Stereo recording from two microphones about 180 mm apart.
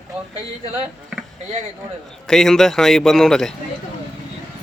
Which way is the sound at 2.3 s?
Centre (ahead or behind).